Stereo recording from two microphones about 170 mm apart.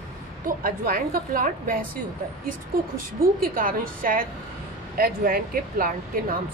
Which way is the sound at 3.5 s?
55° right (ahead or behind).